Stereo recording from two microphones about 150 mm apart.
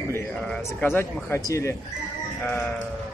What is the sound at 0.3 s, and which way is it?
Bird, 5° left (ahead or behind).